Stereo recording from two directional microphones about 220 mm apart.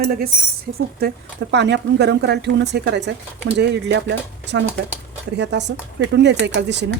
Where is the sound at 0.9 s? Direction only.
50° right (ahead or behind).